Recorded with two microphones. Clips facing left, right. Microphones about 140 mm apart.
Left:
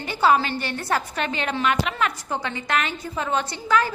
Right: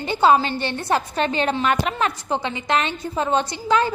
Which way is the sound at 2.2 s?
20° right (ahead or behind).